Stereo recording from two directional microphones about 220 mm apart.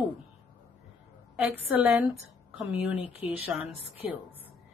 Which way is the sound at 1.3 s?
Centre (ahead or behind).